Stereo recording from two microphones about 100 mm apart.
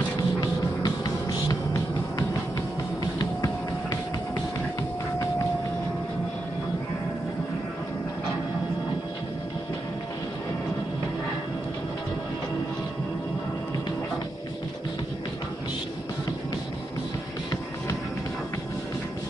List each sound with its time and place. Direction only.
0.4 s music: 40° left (ahead or behind)